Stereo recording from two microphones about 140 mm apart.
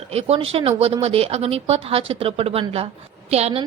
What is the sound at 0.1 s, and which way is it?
A woman's voice, 45° right (ahead or behind).